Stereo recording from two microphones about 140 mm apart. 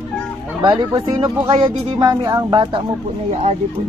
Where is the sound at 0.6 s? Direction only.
25° right (ahead or behind).